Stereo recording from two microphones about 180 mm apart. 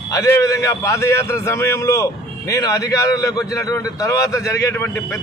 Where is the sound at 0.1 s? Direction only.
15° left (ahead or behind).